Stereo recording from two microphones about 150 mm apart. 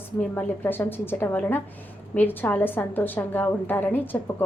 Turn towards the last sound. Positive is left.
turn(degrees=15)  # may be behind; listen again after turning